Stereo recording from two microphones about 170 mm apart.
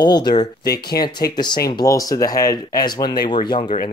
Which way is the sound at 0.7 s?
70° left (ahead or behind).